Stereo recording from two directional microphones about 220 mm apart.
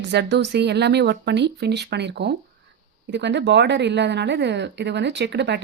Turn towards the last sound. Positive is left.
turn(degrees=-50)  # may be behind; listen again after turning